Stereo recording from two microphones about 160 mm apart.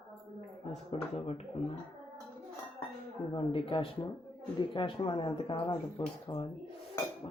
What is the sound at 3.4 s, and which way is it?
Speech, 35° left (ahead or behind).